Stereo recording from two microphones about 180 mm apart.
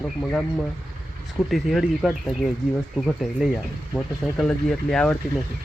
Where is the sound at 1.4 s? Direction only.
Centre (ahead or behind).